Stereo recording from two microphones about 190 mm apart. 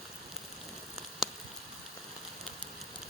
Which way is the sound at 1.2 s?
Centre (ahead or behind).